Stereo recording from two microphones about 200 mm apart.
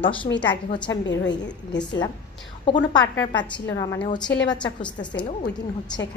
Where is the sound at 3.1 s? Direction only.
10° left (ahead or behind).